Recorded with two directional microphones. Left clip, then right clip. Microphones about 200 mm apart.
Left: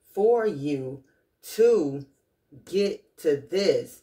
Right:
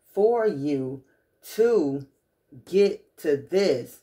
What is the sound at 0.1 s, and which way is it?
Speech, 25° right (ahead or behind).